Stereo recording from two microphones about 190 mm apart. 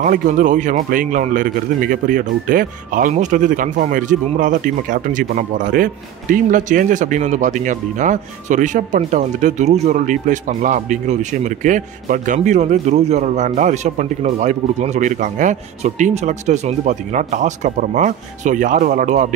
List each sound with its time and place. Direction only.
0.0 s a man's voice: 40° right (ahead or behind)